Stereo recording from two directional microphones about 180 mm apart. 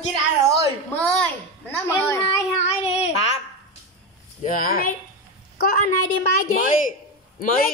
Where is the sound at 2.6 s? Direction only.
35° left (ahead or behind).